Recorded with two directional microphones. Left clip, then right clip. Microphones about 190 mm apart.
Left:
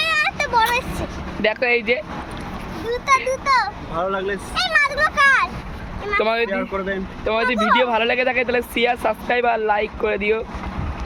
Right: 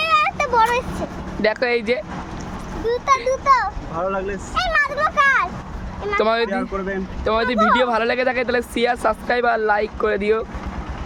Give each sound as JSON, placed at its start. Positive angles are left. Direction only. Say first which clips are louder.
{"t": 0.0, "sound": "vehicle", "louder": "right 2 dB", "side_deg": -50}
{"t": 1.4, "sound": "speech", "louder": "even", "side_deg": -15}
{"t": 3.2, "sound": "a child's voice", "louder": "right 2 dB", "side_deg": -50}
{"t": 3.9, "sound": "speech", "louder": "left 2 dB", "side_deg": 5}
{"t": 4.5, "sound": "speech", "louder": "left 1 dB", "side_deg": -55}
{"t": 6.2, "sound": "speech", "louder": "right 2 dB", "side_deg": -15}
{"t": 6.5, "sound": "speech", "louder": "left 1 dB", "side_deg": -5}
{"t": 7.4, "sound": "speech", "louder": "even", "side_deg": -60}
{"t": 7.9, "sound": "speech", "louder": "even", "side_deg": -15}